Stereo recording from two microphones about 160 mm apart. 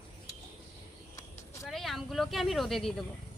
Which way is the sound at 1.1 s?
20° left (ahead or behind).